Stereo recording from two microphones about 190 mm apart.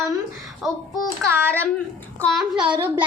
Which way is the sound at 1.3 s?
10° right (ahead or behind).